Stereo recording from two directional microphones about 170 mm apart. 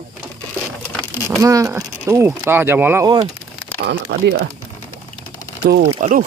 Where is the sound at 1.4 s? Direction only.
20° right (ahead or behind).